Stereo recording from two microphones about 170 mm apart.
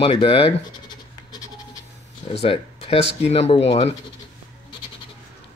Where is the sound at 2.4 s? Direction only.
35° left (ahead or behind).